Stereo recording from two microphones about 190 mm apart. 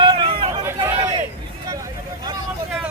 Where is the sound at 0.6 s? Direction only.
15° right (ahead or behind).